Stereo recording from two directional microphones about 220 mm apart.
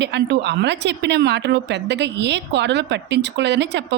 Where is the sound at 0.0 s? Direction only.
50° right (ahead or behind).